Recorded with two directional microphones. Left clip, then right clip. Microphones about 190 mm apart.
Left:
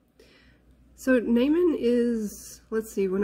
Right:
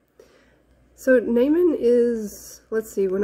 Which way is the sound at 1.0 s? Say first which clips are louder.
Right 6 dB; 10° left (ahead or behind).